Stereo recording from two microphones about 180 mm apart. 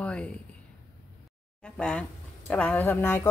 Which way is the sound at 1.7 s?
5° left (ahead or behind).